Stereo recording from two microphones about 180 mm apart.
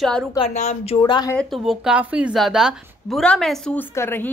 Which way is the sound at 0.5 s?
40° left (ahead or behind).